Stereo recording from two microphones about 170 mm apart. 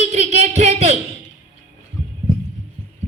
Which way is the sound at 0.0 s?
40° right (ahead or behind).